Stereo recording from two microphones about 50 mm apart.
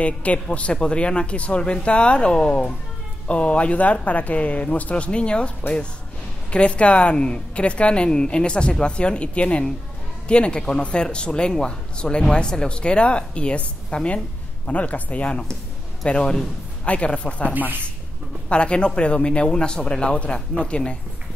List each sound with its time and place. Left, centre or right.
0.0 s speech: left
6.5 s speech: left